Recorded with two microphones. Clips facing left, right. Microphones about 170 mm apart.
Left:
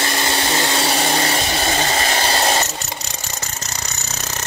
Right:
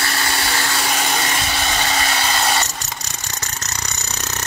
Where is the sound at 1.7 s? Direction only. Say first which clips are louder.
Left 1 dB; 40° left (ahead or behind).